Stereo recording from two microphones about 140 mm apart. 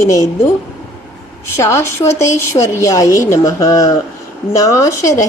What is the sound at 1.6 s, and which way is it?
A woman's voice, 20° left (ahead or behind).